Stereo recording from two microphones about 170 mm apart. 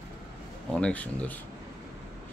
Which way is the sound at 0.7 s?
5° left (ahead or behind).